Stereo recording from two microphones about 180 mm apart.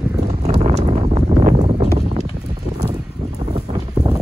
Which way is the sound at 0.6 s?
35° right (ahead or behind).